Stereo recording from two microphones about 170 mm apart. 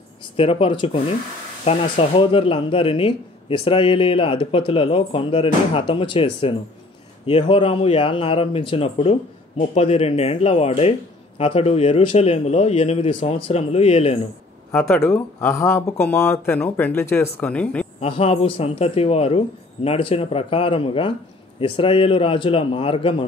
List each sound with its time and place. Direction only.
0.4 s speech: 30° left (ahead or behind)
14.7 s speech: 5° left (ahead or behind)
18.0 s speech: 35° left (ahead or behind)